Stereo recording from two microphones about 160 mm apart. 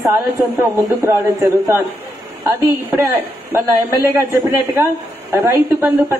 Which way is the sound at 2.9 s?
15° right (ahead or behind).